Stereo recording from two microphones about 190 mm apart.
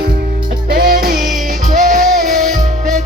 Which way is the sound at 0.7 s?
50° right (ahead or behind).